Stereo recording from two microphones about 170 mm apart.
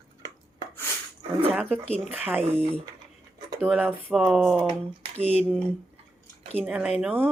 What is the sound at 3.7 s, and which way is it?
Speech, 5° right (ahead or behind).